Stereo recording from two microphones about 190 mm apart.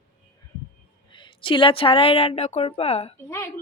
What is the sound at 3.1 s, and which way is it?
Speech, 15° left (ahead or behind).